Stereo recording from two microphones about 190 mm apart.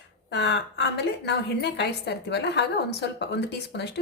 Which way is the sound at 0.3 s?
65° left (ahead or behind).